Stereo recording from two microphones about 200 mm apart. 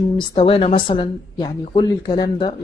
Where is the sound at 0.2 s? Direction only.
25° left (ahead or behind).